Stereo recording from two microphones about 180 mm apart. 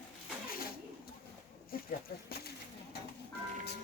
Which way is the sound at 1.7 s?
55° left (ahead or behind).